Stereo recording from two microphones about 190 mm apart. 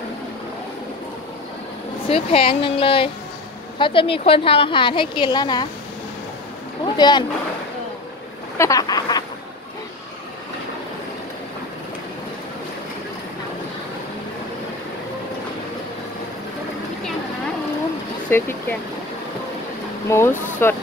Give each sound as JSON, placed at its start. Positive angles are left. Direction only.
{"t": 2.0, "sound": "a woman's voice", "side_deg": 30}
{"t": 7.0, "sound": "a woman's voice", "side_deg": 20}
{"t": 8.5, "sound": "a sound", "side_deg": 15}
{"t": 18.3, "sound": "speech", "side_deg": 10}
{"t": 20.1, "sound": "speech", "side_deg": 10}